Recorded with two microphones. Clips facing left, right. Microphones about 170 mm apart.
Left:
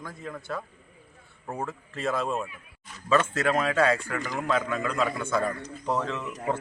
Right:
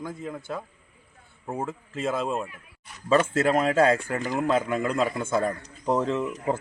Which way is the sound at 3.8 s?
40° right (ahead or behind).